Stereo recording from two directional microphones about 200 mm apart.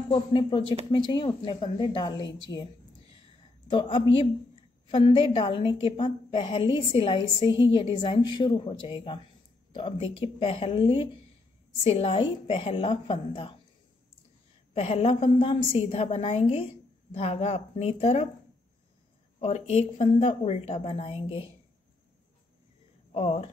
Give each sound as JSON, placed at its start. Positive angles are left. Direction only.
{"t": 0.1, "sound": "a woman's voice", "side_deg": 25}
{"t": 3.7, "sound": "a woman's voice", "side_deg": 25}
{"t": 14.7, "sound": "a woman's voice", "side_deg": 30}
{"t": 19.4, "sound": "a woman's voice", "side_deg": 30}
{"t": 23.1, "sound": "a woman's voice", "side_deg": 30}